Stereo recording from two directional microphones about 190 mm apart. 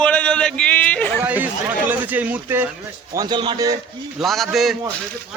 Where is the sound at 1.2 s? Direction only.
10° right (ahead or behind).